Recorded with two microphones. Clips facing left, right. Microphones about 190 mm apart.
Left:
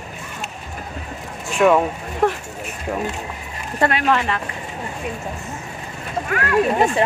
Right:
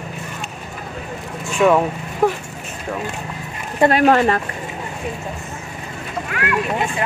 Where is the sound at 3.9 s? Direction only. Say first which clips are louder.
Right 8 dB; 45° right (ahead or behind).